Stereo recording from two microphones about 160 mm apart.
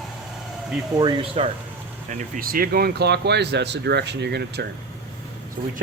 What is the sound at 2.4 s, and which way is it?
Speech, 65° right (ahead or behind).